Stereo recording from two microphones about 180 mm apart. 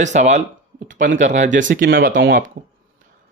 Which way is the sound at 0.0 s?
40° right (ahead or behind).